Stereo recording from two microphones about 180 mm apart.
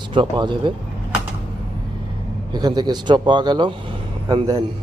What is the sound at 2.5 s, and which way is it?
Speech, 25° right (ahead or behind).